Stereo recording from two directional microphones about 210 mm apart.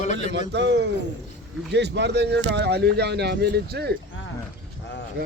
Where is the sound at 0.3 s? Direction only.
55° right (ahead or behind).